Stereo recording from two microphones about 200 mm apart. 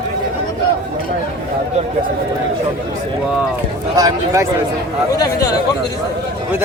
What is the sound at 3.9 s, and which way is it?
Speech, 20° right (ahead or behind).